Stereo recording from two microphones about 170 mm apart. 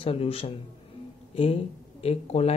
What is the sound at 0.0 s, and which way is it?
Speech, 35° left (ahead or behind).